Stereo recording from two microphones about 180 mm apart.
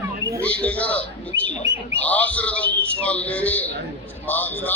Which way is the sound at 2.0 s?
10° left (ahead or behind).